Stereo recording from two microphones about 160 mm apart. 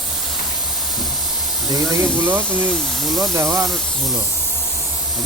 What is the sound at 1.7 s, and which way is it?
Speech, 20° right (ahead or behind).